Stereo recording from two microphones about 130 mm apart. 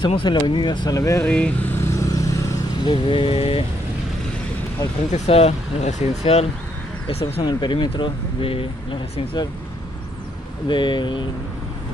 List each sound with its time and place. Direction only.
0.0 s speech: 40° left (ahead or behind)
1.2 s vehicle: 10° left (ahead or behind); by 2.9 s 25° left (ahead or behind)
2.9 s speech: 40° left (ahead or behind)
5.1 s speech: 55° left (ahead or behind)
7.3 s speech: 40° left (ahead or behind)
10.7 s speech: 35° left (ahead or behind)